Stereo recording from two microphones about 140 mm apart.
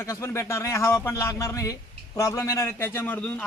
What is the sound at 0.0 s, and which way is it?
Speech, 20° left (ahead or behind).